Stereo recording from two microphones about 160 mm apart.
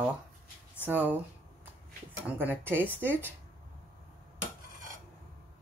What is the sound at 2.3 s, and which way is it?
Speech, 10° right (ahead or behind).